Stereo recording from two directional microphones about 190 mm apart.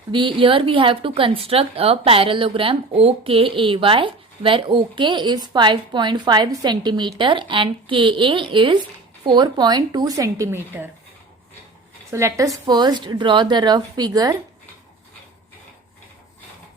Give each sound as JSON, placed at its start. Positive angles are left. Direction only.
{"t": 0.1, "sound": "a woman's voice", "side_deg": -25}
{"t": 12.1, "sound": "a woman's voice", "side_deg": -15}